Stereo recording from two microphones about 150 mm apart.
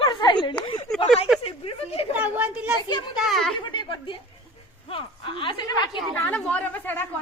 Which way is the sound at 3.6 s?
30° left (ahead or behind).